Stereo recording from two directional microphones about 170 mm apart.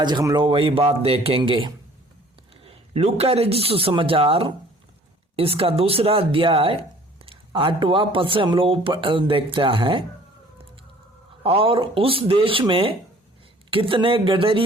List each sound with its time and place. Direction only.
0.0 s speech: 25° right (ahead or behind)
11.4 s speech: 35° right (ahead or behind)